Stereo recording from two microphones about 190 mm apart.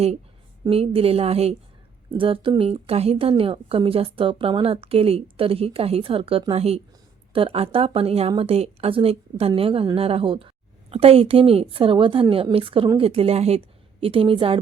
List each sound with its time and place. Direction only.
0.6 s a woman's voice: 30° right (ahead or behind)